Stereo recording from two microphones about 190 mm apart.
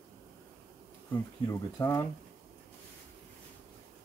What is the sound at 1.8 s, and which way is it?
Speech, 15° left (ahead or behind).